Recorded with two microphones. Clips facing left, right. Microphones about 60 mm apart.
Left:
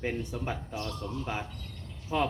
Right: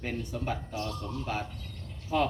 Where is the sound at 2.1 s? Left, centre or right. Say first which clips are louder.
Right 1 dB; left.